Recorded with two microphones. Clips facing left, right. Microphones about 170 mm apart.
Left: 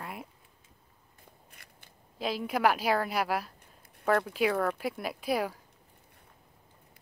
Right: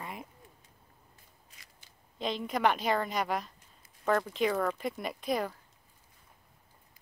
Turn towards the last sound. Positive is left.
turn(degrees=10)  # may be behind; listen again after turning